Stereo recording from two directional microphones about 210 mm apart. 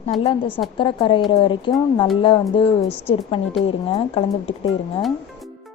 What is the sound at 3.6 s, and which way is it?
Speech, 30° left (ahead or behind).